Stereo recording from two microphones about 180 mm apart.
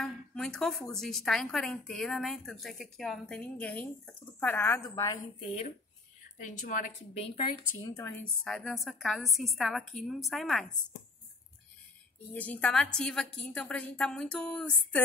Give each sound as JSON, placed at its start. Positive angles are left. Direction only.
{"t": 0.0, "sound": "speech", "side_deg": 5}
{"t": 4.8, "sound": "a woman's voice", "side_deg": 20}
{"t": 6.3, "sound": "speech", "side_deg": 45}
{"t": 7.2, "sound": "a woman's voice", "side_deg": 30}
{"t": 7.9, "sound": "speech", "side_deg": 15}
{"t": 8.5, "sound": "speech", "side_deg": 0}
{"t": 12.4, "sound": "speech", "side_deg": 5}